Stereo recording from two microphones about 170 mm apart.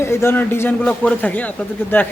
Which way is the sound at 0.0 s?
15° left (ahead or behind).